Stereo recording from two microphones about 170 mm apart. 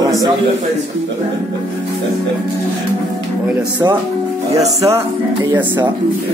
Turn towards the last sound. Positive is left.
turn(degrees=-35)  # may be behind; listen again after turning